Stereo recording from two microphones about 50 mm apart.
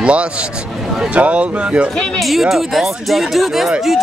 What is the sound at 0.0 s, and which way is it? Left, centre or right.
Speech, right.